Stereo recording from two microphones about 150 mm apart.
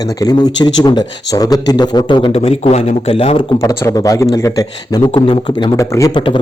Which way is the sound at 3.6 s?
25° left (ahead or behind).